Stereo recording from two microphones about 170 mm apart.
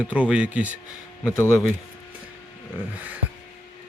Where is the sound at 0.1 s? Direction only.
5° right (ahead or behind).